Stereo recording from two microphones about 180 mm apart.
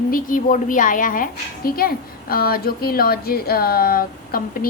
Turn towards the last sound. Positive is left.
turn(degrees=55)  # may be behind; listen again after turning